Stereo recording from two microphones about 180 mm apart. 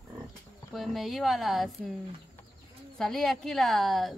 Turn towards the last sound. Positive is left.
turn(degrees=0)  # may be behind; listen again after turning